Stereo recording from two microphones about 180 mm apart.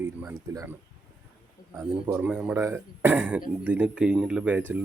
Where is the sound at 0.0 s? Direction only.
10° right (ahead or behind).